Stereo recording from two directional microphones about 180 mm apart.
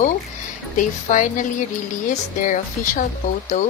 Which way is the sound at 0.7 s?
45° left (ahead or behind).